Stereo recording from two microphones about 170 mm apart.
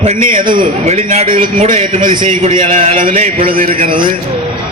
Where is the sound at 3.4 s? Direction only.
55° right (ahead or behind).